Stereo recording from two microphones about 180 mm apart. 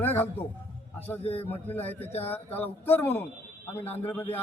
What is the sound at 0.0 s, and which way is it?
A man's voice, 10° left (ahead or behind).